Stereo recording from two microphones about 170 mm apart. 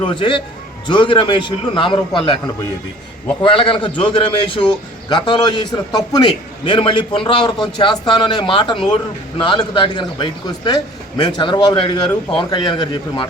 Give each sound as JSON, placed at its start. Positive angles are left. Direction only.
{"t": 0.0, "sound": "a man's voice", "side_deg": 30}
{"t": 3.4, "sound": "a man's voice", "side_deg": 30}